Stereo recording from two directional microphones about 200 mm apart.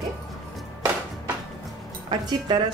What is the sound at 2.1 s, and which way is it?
Speech, 20° right (ahead or behind).